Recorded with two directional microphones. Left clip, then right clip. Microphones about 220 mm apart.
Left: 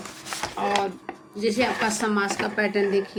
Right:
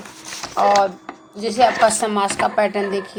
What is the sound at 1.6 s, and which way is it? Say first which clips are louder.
Speech: right 12 dB; 15° right (ahead or behind).